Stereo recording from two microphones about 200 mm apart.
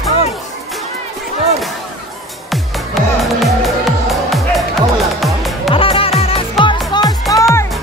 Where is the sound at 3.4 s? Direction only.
Centre (ahead or behind).